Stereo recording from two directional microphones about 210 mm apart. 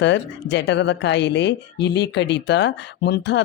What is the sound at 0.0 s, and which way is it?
Speech, 55° left (ahead or behind).